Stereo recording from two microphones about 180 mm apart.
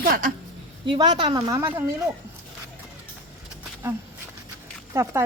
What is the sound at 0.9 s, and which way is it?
Speech, 25° right (ahead or behind).